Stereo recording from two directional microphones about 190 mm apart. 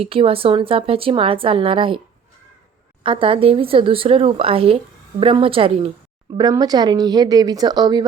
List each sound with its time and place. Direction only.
0.0 s a woman's voice: 30° right (ahead or behind)
3.0 s a woman's voice: 30° right (ahead or behind)
6.3 s a woman's voice: 20° right (ahead or behind)